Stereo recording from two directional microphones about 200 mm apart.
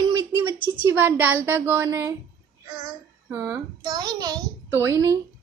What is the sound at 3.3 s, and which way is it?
A woman's voice, 15° right (ahead or behind).